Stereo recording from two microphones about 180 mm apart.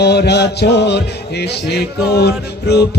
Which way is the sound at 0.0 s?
65° left (ahead or behind).